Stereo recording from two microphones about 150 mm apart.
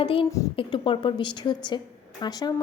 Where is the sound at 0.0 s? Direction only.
35° left (ahead or behind).